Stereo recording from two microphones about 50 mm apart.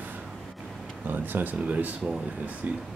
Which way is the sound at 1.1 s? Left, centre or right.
Right.